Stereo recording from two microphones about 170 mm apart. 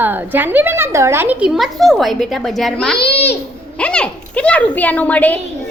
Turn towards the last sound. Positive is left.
turn(degrees=10)  # may be behind; listen again after turning